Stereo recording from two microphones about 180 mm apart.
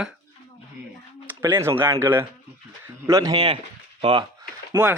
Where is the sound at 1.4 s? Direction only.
15° right (ahead or behind).